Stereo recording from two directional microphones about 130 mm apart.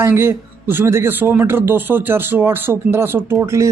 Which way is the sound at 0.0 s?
20° right (ahead or behind).